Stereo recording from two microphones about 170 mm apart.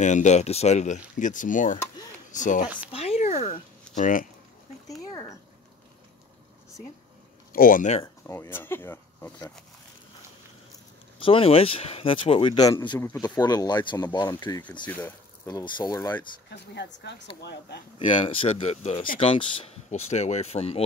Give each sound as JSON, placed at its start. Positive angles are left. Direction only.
{"t": 0.0, "sound": "speech", "side_deg": 45}
{"t": 2.9, "sound": "a sound", "side_deg": 35}
{"t": 7.5, "sound": "speech", "side_deg": 55}
{"t": 8.3, "sound": "speech", "side_deg": 15}
{"t": 11.1, "sound": "speech", "side_deg": 30}
{"t": 14.6, "sound": "speech", "side_deg": 10}
{"t": 16.4, "sound": "speech", "side_deg": 90}
{"t": 17.4, "sound": "speech", "side_deg": 80}
{"t": 17.9, "sound": "speech", "side_deg": 30}